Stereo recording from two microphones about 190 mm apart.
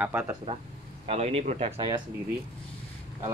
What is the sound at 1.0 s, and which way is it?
Speech, 30° right (ahead or behind).